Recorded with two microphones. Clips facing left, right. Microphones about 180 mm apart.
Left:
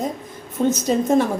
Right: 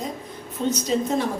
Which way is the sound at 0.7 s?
50° left (ahead or behind).